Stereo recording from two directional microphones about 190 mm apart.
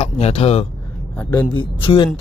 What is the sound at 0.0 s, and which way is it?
Speech, 30° left (ahead or behind).